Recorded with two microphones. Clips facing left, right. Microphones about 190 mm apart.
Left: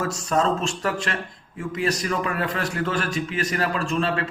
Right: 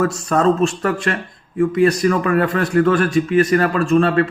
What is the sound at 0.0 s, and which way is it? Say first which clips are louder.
A man's voice: right 7 dB; 55° right (ahead or behind).